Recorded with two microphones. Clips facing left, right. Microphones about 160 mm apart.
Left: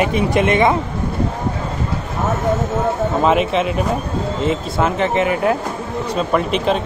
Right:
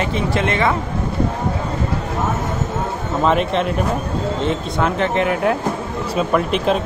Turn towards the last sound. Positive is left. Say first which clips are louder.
# even
turn(degrees=0)  # may be behind; listen again after turning